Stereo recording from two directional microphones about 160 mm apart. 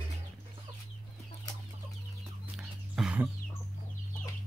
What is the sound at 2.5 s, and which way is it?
Music, 5° right (ahead or behind).